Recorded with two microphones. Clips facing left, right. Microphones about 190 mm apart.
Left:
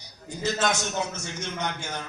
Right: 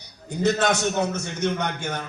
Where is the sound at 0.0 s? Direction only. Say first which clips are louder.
Right 7 dB; 60° right (ahead or behind).